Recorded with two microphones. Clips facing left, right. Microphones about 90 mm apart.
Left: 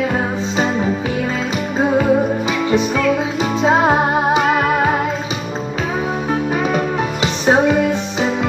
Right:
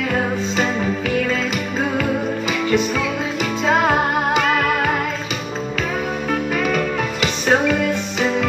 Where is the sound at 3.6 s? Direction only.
25° left (ahead or behind).